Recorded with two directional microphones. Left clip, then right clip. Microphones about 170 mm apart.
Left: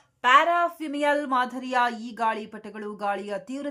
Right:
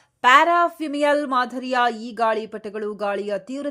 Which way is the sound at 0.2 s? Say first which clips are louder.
Right 4 dB; 35° right (ahead or behind).